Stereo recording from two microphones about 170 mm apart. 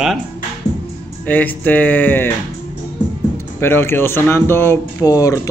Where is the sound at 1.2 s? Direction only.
10° left (ahead or behind).